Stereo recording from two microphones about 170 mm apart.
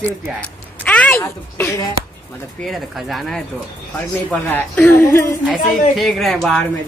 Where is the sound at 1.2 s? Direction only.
15° left (ahead or behind).